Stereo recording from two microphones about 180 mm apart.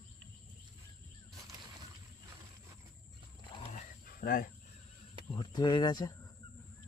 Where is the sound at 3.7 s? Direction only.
45° left (ahead or behind).